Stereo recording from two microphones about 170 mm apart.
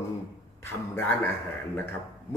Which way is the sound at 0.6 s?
10° left (ahead or behind).